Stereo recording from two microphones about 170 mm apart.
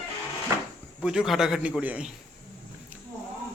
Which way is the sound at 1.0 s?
5° right (ahead or behind).